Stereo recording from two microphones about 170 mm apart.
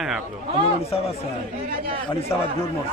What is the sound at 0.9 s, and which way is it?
Speech, 35° left (ahead or behind).